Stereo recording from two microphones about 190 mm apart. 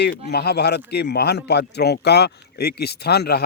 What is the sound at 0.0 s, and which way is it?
A man's voice, 60° left (ahead or behind).